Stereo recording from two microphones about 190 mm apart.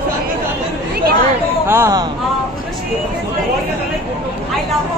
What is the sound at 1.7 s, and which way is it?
Speech, 15° right (ahead or behind).